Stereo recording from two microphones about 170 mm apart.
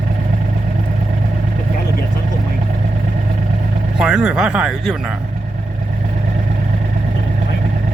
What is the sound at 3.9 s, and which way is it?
Speech, 5° right (ahead or behind).